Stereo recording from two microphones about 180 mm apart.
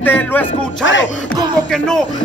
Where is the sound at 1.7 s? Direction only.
5° left (ahead or behind).